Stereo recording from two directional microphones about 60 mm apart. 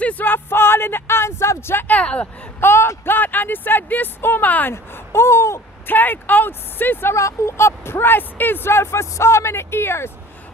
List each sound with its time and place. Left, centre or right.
0.0 s a sound: left
1.8 s speech: left
2.6 s a sound: left
3.1 s speech: left
5.9 s speech: left
7.2 s speech: left